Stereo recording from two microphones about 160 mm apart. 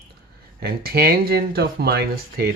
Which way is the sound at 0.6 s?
80° right.